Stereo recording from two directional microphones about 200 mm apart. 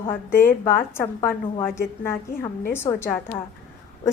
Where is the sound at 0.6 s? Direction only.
10° left (ahead or behind).